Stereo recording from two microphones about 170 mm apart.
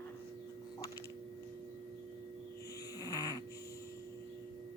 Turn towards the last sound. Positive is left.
turn(degrees=20)  # may be behind; listen again after turning